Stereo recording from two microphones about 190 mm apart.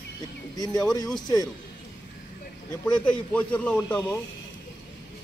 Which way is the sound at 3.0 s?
5° left (ahead or behind).